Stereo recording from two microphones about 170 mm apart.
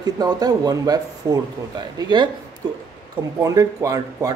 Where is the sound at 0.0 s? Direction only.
20° right (ahead or behind).